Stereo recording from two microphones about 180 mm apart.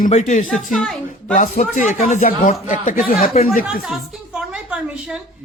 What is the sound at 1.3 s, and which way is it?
A man's voice, 45° left (ahead or behind).